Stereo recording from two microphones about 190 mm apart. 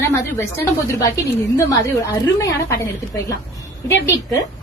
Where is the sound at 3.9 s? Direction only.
10° left (ahead or behind).